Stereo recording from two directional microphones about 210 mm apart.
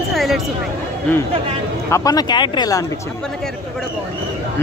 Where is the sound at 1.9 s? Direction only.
15° left (ahead or behind).